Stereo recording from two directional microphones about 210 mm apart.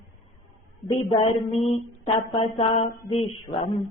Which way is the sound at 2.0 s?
25° left (ahead or behind).